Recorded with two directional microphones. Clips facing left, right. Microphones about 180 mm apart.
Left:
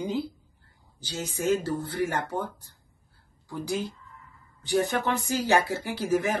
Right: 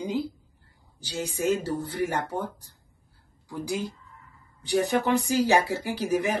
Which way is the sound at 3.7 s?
15° right (ahead or behind).